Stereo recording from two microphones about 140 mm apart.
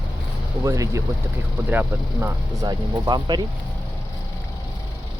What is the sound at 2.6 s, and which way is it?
Speech, 30° right (ahead or behind).